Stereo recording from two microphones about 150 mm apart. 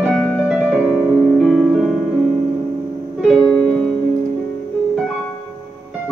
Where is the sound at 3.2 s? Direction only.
5° left (ahead or behind).